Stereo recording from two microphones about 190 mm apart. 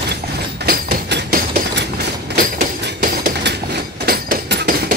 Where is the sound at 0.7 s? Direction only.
50° right (ahead or behind).